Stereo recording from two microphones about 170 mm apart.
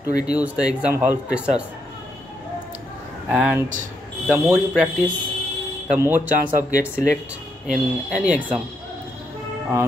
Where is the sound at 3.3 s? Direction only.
5° right (ahead or behind).